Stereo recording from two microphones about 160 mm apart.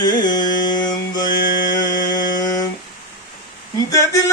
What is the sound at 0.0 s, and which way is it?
Carnatic music, 25° left (ahead or behind).